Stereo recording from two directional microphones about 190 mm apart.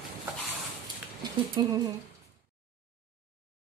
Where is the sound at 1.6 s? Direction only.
25° right (ahead or behind).